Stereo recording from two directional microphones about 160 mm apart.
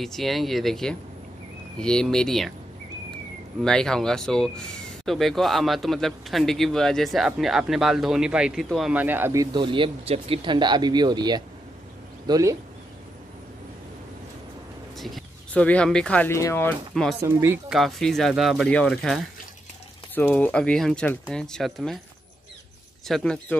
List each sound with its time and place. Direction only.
0.0 s speech: centre (ahead or behind)
3.6 s speech: 5° left (ahead or behind); by 12.5 s 20° right (ahead or behind)
15.0 s speech: centre (ahead or behind); by 16.7 s 15° left (ahead or behind)
16.9 s speech: centre (ahead or behind)
17.2 s speech: 15° right (ahead or behind)
17.6 s speech: centre (ahead or behind)
23.0 s speech: 5° left (ahead or behind)